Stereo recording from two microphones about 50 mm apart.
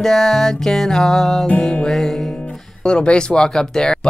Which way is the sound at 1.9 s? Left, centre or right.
Centre.